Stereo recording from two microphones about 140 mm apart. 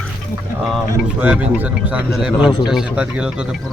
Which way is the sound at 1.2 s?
10° right (ahead or behind).